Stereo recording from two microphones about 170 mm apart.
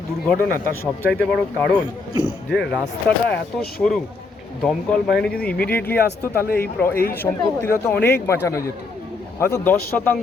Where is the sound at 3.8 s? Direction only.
5° left (ahead or behind).